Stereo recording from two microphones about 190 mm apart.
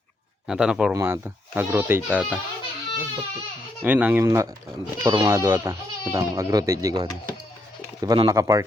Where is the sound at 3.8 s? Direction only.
10° right (ahead or behind).